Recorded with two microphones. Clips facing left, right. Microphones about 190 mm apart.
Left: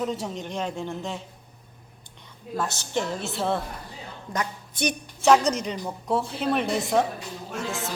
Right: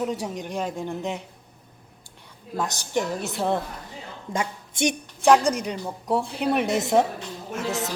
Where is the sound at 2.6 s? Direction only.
15° right (ahead or behind).